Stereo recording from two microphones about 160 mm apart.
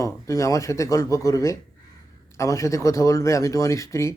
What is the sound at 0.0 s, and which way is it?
Speech, 20° left (ahead or behind).